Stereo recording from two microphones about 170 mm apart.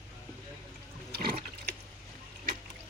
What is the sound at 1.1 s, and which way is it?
Water, 65° right (ahead or behind).